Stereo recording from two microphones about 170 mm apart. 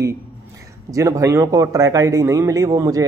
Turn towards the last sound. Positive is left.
turn(degrees=-20)  # may be behind; listen again after turning